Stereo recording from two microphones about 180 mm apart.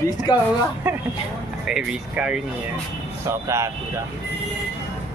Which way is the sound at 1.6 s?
5° right (ahead or behind).